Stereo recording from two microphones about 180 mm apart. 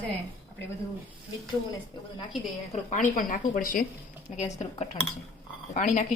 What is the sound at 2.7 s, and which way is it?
Speech, 45° left (ahead or behind).